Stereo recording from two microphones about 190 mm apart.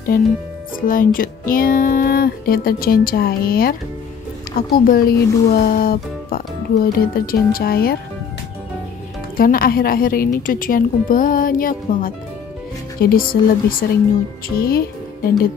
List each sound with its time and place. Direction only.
0.7 s speech: 45° left (ahead or behind)
9.4 s speech: 50° left (ahead or behind)